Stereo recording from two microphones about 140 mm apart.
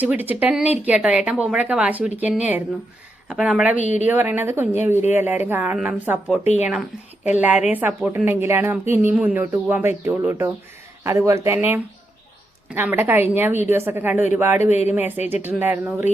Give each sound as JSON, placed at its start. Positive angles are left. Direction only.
{"t": 0.0, "sound": "speech", "side_deg": -10}
{"t": 6.4, "sound": "speech", "side_deg": 55}
{"t": 7.7, "sound": "speech", "side_deg": -10}
{"t": 14.7, "sound": "speech", "side_deg": 50}
{"t": 14.9, "sound": "speech", "side_deg": -15}